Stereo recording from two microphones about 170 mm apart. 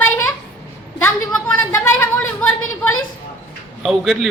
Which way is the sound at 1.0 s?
10° left (ahead or behind).